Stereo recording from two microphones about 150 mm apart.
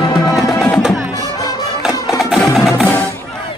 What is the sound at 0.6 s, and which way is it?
Music, 5° left (ahead or behind).